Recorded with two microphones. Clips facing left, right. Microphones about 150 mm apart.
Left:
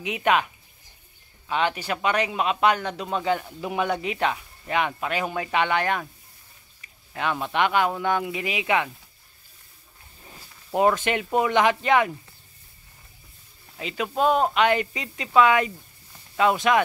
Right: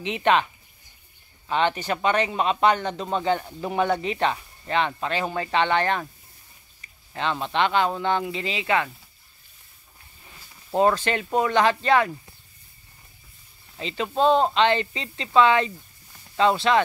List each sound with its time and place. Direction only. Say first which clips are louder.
0.0 s speech: right 1 dB; 5° left (ahead or behind)
1.5 s speech: right 2 dB; 5° left (ahead or behind)
6.8 s a sound: even; 10° left (ahead or behind)
7.5 s speech: even; 10° left (ahead or behind)
10.7 s speech: even; 10° left (ahead or behind)
13.7 s speech: even; 10° left (ahead or behind)
14.1 s speech: right 2 dB; 25° right (ahead or behind)
14.4 s speech: even; 10° left (ahead or behind)